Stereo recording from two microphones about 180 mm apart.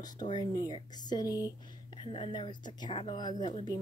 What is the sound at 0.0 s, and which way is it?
Speech, 25° left (ahead or behind).